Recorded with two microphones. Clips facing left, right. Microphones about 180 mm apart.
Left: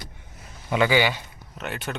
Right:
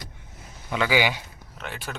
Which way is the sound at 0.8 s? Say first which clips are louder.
Left 1 dB; 10° right (ahead or behind).